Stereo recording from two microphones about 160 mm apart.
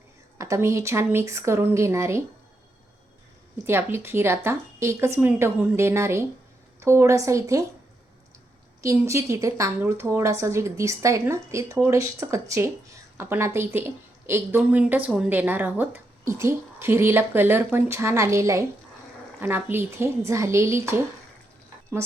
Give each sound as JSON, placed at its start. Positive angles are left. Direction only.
{"t": 0.3, "sound": "a woman's voice", "side_deg": -20}
{"t": 3.7, "sound": "a woman's voice", "side_deg": -15}
{"t": 8.8, "sound": "a woman's voice", "side_deg": -20}